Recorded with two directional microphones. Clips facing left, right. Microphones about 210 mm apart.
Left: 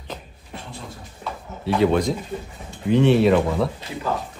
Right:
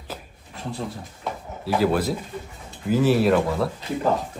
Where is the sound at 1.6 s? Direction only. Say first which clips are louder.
Left 3 dB; 5° right (ahead or behind).